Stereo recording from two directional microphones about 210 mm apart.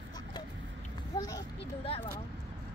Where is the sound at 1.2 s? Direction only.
20° left (ahead or behind).